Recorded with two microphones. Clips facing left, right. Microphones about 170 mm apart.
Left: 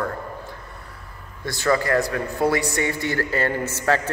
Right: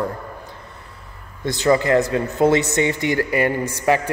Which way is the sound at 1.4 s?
20° right (ahead or behind).